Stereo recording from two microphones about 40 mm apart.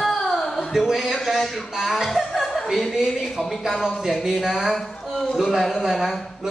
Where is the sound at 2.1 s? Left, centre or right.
Centre.